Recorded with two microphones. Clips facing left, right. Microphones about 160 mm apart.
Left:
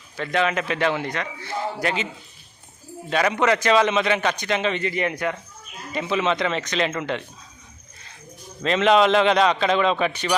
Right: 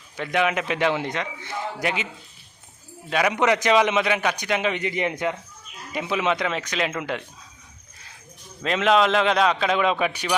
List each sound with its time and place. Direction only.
0.2 s a man's voice: 15° right (ahead or behind)
3.1 s a man's voice: 10° right (ahead or behind)
8.6 s a man's voice: 5° right (ahead or behind)